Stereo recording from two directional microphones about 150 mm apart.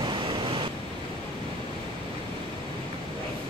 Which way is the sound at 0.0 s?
30° right (ahead or behind).